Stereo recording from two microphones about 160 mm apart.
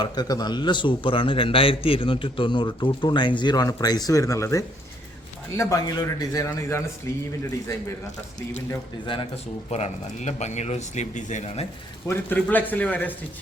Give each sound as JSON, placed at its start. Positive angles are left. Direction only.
{"t": 0.0, "sound": "a man's voice", "side_deg": 25}
{"t": 9.1, "sound": "speech", "side_deg": 35}
{"t": 12.0, "sound": "a man's voice", "side_deg": 10}